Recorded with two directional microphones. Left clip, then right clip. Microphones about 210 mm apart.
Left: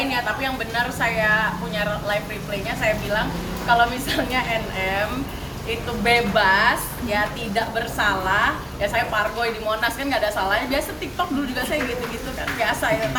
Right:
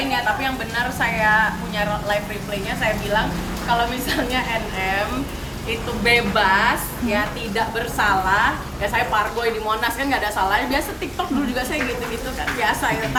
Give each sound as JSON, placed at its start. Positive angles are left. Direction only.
{"t": 0.9, "sound": "a woman's voice", "side_deg": 5}
{"t": 3.7, "sound": "a woman's voice", "side_deg": 0}
{"t": 6.1, "sound": "a woman's voice", "side_deg": 0}